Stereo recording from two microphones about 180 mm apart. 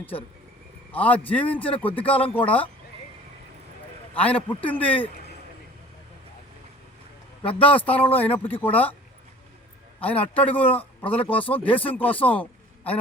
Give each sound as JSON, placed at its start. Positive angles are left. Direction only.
{"t": 0.9, "sound": "a man's voice", "side_deg": 10}
{"t": 1.6, "sound": "speech", "side_deg": 30}
{"t": 2.2, "sound": "a man's voice", "side_deg": 10}
{"t": 4.2, "sound": "a man's voice", "side_deg": 10}
{"t": 7.4, "sound": "speech", "side_deg": 30}
{"t": 7.8, "sound": "a man's voice", "side_deg": 10}
{"t": 8.3, "sound": "speech", "side_deg": 30}
{"t": 8.6, "sound": "a man's voice", "side_deg": 10}
{"t": 10.0, "sound": "a man's voice", "side_deg": 10}